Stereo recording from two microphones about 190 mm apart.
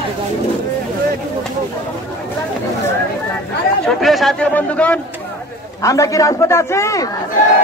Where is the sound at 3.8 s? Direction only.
Centre (ahead or behind).